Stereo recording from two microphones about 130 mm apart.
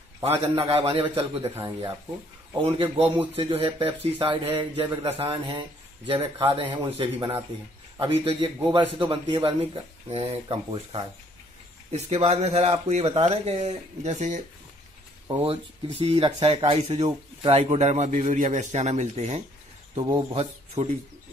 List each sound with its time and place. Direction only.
0.2 s speech: 50° right (ahead or behind)
1.5 s dishes: 20° right (ahead or behind)
2.6 s a man's voice: 45° right (ahead or behind); by 14.4 s 65° right (ahead or behind)
16.3 s speech: 50° right (ahead or behind)
20.0 s a man's voice: 35° right (ahead or behind)
20.3 s speech: 50° right (ahead or behind)